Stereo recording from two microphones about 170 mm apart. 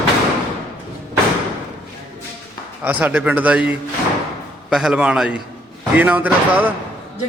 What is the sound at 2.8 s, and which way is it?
A man's voice, 10° right (ahead or behind).